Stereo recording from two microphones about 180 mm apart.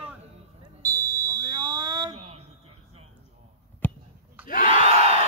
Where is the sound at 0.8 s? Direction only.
20° right (ahead or behind).